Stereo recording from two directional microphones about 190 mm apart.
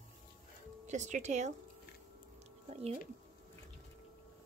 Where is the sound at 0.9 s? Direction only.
40° right (ahead or behind).